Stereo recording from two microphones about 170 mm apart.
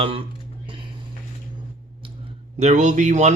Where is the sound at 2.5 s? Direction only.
40° right (ahead or behind).